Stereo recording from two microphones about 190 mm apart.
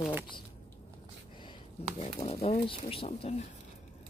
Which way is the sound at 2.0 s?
35° left (ahead or behind).